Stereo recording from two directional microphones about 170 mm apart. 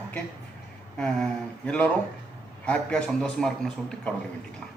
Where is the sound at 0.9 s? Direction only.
5° left (ahead or behind).